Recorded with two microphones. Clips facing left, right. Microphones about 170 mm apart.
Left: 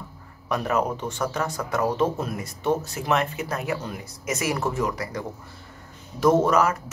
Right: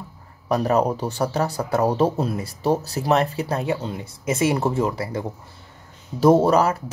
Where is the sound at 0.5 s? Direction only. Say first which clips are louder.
Right 5 dB; 35° right (ahead or behind).